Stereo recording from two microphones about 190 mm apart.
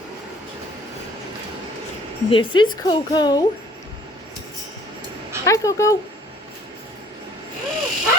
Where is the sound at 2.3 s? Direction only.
25° left (ahead or behind).